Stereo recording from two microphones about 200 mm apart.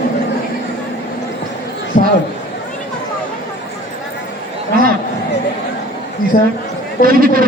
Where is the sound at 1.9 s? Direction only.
40° left (ahead or behind).